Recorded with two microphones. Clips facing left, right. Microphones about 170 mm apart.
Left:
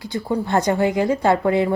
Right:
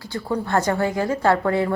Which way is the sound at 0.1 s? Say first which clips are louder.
Left 2 dB; 15° left (ahead or behind).